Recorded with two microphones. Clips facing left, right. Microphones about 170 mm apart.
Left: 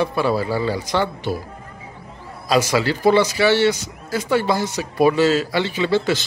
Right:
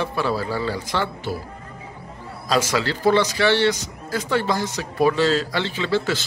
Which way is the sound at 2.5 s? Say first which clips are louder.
Left 3 dB; 10° left (ahead or behind).